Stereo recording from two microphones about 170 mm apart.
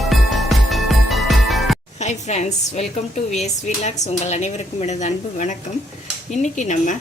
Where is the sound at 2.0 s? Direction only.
40° left (ahead or behind).